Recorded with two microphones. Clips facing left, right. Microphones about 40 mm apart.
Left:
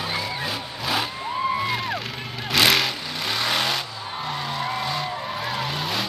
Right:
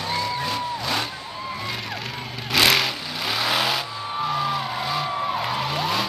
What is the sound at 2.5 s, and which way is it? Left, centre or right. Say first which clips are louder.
Vehicle: even; centre.